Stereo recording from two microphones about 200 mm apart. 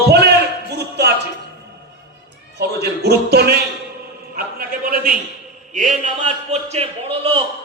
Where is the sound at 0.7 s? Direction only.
55° right (ahead or behind).